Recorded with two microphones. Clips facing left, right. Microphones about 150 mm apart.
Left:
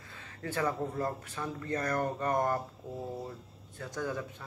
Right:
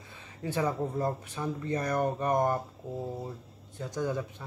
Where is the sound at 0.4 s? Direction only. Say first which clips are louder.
Right 2 dB; 15° right (ahead or behind).